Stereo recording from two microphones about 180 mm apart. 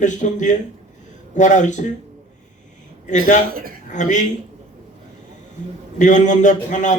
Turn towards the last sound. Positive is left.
turn(degrees=45)  # may be behind; listen again after turning